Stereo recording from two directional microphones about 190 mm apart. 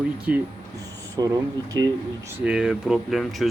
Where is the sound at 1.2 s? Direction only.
20° right (ahead or behind).